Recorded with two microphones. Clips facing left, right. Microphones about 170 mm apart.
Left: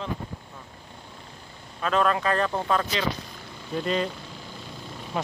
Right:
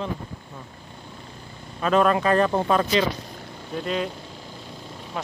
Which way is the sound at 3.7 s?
5° right (ahead or behind).